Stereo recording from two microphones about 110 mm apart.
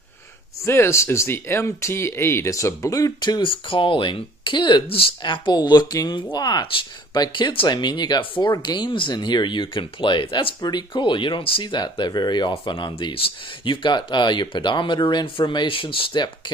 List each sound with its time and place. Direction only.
0.7 s speech: 25° left (ahead or behind); by 16.3 s 50° left (ahead or behind)